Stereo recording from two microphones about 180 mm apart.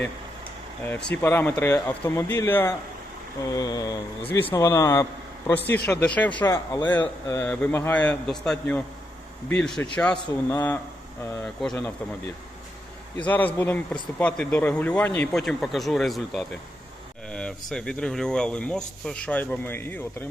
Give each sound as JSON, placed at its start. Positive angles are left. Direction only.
{"t": 1.1, "sound": "a man's voice", "side_deg": 15}
{"t": 13.1, "sound": "a man's voice", "side_deg": 10}